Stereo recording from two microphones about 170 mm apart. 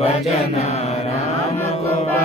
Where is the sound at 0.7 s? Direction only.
40° left (ahead or behind).